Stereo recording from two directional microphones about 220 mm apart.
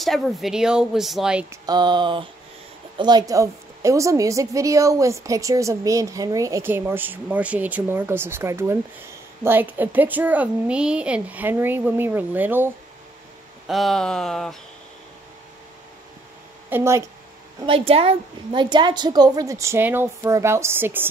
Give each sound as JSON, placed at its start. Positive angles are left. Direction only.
{"t": 0.0, "sound": "a woman's voice", "side_deg": 0}
{"t": 1.7, "sound": "a woman's voice", "side_deg": -20}
{"t": 16.6, "sound": "speech", "side_deg": -10}
{"t": 17.6, "sound": "a woman's voice", "side_deg": -25}